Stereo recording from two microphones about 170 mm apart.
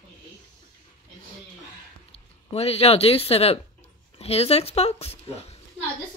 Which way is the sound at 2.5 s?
35° left (ahead or behind).